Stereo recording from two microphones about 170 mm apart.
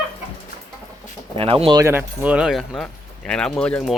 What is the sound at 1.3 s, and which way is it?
Speech, 35° right (ahead or behind).